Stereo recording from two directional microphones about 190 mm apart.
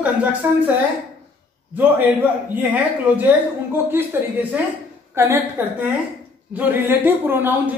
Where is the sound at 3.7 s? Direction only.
10° right (ahead or behind).